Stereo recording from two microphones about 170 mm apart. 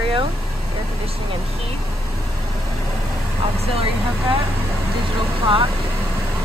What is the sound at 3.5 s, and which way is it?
Speech, 35° right (ahead or behind).